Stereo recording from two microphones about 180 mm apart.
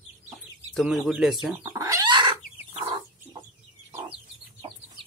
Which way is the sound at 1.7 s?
20° right (ahead or behind).